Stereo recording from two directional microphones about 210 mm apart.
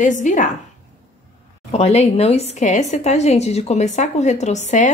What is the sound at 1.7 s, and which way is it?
A woman's voice, 30° left (ahead or behind).